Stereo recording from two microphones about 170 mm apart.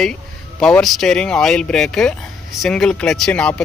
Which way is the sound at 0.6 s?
5° left (ahead or behind).